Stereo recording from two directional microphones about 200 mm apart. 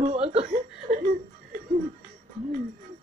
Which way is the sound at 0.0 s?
30° right (ahead or behind).